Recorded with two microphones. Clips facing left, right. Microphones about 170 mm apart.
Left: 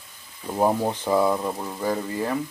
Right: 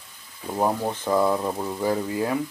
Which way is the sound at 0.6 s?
10° left (ahead or behind).